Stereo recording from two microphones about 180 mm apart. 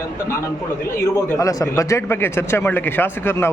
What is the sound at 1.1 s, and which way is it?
A man's voice, 20° left (ahead or behind).